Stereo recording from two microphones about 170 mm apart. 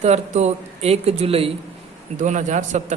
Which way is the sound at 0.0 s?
40° right (ahead or behind).